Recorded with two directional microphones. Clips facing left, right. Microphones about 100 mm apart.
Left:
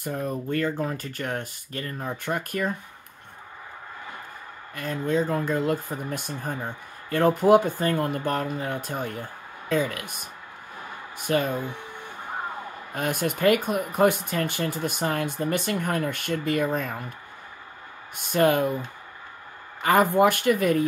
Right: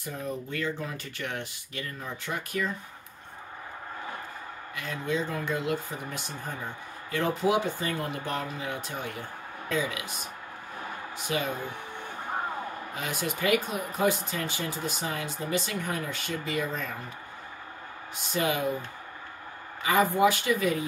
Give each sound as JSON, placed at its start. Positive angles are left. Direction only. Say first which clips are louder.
{"t": 0.0, "sound": "speech", "louder": "left 5 dB", "side_deg": 55}
{"t": 4.7, "sound": "speech", "louder": "left 6 dB", "side_deg": 45}
{"t": 12.9, "sound": "speech", "louder": "left 8 dB", "side_deg": 55}
{"t": 18.1, "sound": "speech", "louder": "left 8 dB", "side_deg": 55}
{"t": 19.8, "sound": "speech", "louder": "left 4 dB", "side_deg": 55}